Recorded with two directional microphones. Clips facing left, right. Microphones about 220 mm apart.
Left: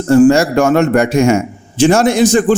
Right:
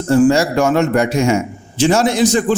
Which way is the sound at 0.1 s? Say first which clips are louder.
Left 4 dB; 50° left (ahead or behind).